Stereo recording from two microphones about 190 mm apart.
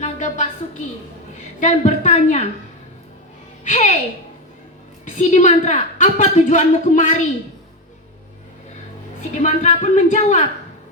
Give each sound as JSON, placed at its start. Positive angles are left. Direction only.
{"t": 0.0, "sound": "a sound", "side_deg": 40}
{"t": 1.6, "sound": "a woman's voice", "side_deg": 40}
{"t": 3.6, "sound": "a woman's voice", "side_deg": 40}
{"t": 5.0, "sound": "a woman's voice", "side_deg": 40}
{"t": 9.4, "sound": "a woman's voice", "side_deg": 40}